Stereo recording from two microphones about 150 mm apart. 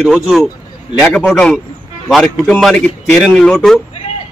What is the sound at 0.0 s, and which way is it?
Speech, centre (ahead or behind).